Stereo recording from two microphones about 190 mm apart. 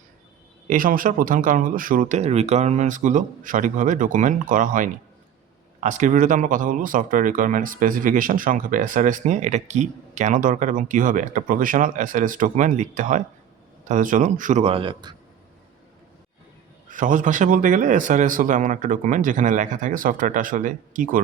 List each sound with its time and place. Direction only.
0.7 s speech: 45° right (ahead or behind); by 15.1 s 25° right (ahead or behind)
16.9 s speech: 45° right (ahead or behind)